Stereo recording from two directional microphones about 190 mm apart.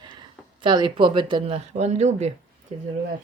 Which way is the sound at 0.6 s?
25° right (ahead or behind).